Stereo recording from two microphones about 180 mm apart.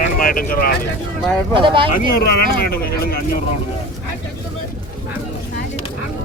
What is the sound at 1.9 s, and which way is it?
Speech, 55° left (ahead or behind).